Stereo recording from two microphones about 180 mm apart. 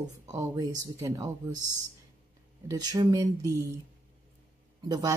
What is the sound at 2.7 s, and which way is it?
Speech, 20° right (ahead or behind).